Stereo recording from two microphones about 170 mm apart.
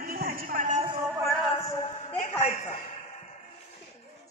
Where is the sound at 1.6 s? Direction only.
20° left (ahead or behind).